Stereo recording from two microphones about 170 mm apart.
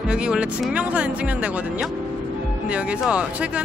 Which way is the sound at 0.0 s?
5° right (ahead or behind).